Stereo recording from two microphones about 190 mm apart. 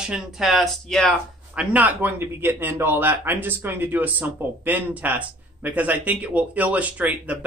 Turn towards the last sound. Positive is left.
turn(degrees=-10)  # may be behind; listen again after turning